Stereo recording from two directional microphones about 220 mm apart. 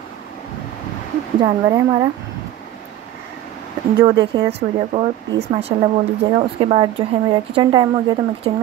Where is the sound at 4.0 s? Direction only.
20° right (ahead or behind).